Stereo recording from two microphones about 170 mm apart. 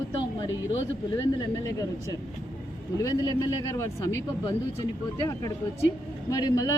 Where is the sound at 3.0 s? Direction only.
20° left (ahead or behind).